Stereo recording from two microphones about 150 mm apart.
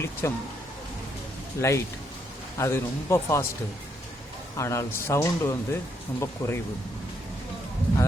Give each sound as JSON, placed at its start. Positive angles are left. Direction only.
{"t": 0.0, "sound": "speech", "side_deg": 15}
{"t": 1.6, "sound": "speech", "side_deg": 15}
{"t": 4.5, "sound": "speech", "side_deg": 20}